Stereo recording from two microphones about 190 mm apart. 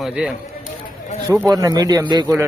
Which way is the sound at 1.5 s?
20° right (ahead or behind).